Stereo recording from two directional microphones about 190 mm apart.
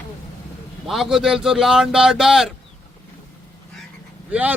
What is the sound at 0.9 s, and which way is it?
Speech, centre (ahead or behind).